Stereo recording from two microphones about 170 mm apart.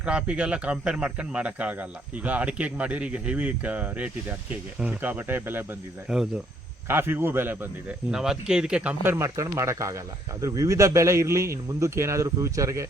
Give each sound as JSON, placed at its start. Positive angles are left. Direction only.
{"t": 0.0, "sound": "speech", "side_deg": -5}